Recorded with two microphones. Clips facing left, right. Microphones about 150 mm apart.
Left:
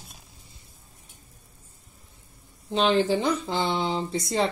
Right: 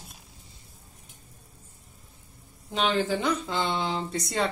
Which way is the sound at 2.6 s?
30° left (ahead or behind).